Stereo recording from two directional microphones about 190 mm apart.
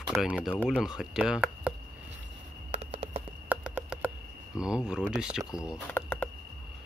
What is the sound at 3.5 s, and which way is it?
Computer keyboard, 5° right (ahead or behind).